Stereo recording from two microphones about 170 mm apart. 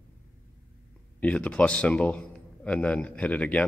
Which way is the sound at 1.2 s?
5° left (ahead or behind).